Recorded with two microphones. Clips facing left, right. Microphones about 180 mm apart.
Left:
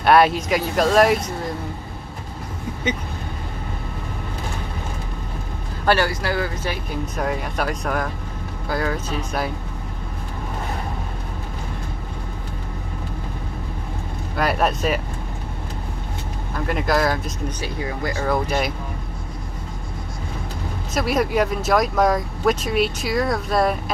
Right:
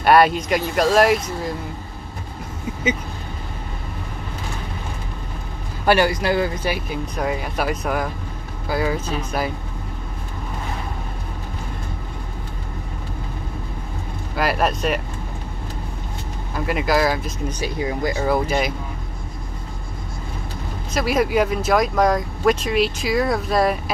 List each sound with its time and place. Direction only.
0.0 s speech: centre (ahead or behind)
5.9 s speech: 15° right (ahead or behind)
6.7 s speech: 5° right (ahead or behind)
14.3 s speech: centre (ahead or behind)
16.5 s speech: 5° right (ahead or behind)
20.9 s speech: centre (ahead or behind)